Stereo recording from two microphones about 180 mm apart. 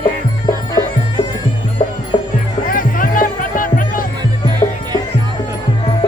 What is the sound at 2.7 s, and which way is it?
Music, 50° left (ahead or behind).